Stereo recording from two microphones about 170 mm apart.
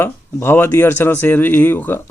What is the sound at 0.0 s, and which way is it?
Speech, 15° left (ahead or behind).